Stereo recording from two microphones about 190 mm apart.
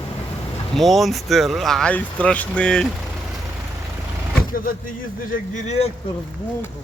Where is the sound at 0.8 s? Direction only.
Centre (ahead or behind).